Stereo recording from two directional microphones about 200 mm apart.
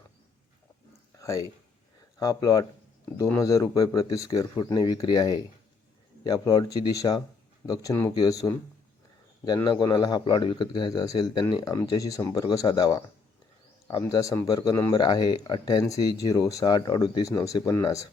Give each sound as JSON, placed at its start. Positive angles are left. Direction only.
{"t": 1.2, "sound": "speech", "side_deg": 15}
{"t": 9.6, "sound": "speech", "side_deg": 20}